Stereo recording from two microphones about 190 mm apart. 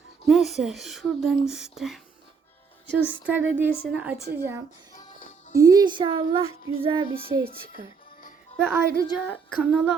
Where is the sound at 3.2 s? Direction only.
10° right (ahead or behind); by 7.0 s 30° right (ahead or behind).